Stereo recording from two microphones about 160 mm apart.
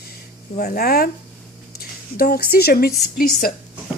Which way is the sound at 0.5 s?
70° left (ahead or behind).